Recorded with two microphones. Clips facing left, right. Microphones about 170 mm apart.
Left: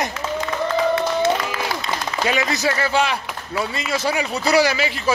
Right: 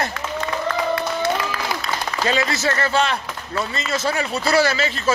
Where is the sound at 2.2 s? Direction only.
15° left (ahead or behind).